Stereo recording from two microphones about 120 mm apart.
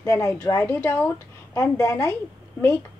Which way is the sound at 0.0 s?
20° left (ahead or behind).